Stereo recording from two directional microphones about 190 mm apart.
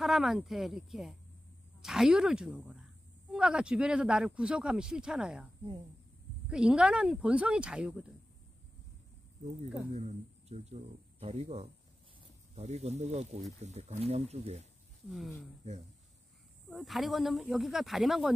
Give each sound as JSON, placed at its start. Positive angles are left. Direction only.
{"t": 0.0, "sound": "speech", "side_deg": 0}
{"t": 6.5, "sound": "speech", "side_deg": -5}
{"t": 9.9, "sound": "speech", "side_deg": -35}
{"t": 15.0, "sound": "speech", "side_deg": 0}
{"t": 16.6, "sound": "speech", "side_deg": 0}